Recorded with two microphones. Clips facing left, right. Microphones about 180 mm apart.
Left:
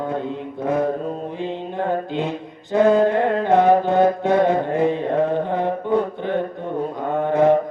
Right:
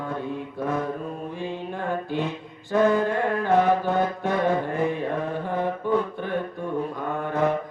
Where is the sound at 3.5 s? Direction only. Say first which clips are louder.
Left 5 dB; 55° left (ahead or behind).